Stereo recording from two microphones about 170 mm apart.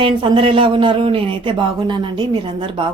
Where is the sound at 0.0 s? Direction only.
30° right (ahead or behind).